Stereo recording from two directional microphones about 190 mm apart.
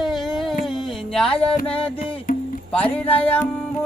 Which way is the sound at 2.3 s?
45° left (ahead or behind).